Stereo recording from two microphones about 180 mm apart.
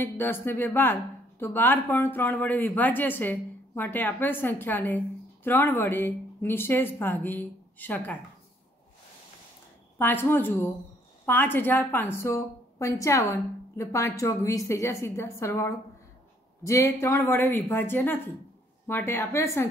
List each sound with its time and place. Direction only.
0.0 s speech: 10° left (ahead or behind)
9.9 s speech: 10° left (ahead or behind)